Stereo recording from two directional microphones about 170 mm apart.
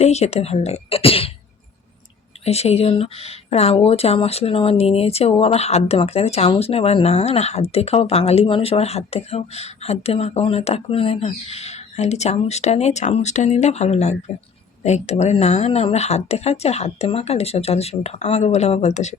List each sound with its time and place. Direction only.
0.0 s speech: 40° left (ahead or behind)
2.4 s speech: 40° left (ahead or behind)